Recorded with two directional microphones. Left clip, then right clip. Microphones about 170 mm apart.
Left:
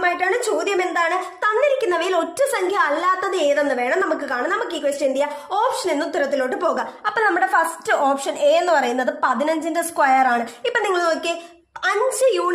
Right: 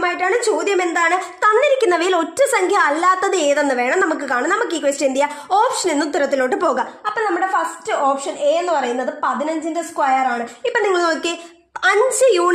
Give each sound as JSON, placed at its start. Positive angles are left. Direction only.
{"t": 0.0, "sound": "a woman's voice", "side_deg": -40}
{"t": 7.2, "sound": "a woman's voice", "side_deg": 0}
{"t": 9.7, "sound": "a woman's voice", "side_deg": -10}
{"t": 10.7, "sound": "a woman's voice", "side_deg": -30}